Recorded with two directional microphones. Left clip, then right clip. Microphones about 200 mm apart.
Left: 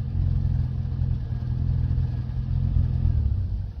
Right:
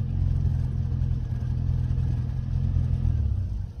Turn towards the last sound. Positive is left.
turn(degrees=-45)  # may be behind; listen again after turning